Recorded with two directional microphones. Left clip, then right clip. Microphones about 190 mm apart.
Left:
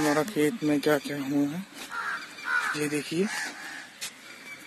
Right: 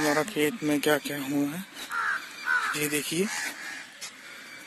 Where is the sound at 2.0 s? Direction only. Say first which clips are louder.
Right 4 dB; 25° left (ahead or behind).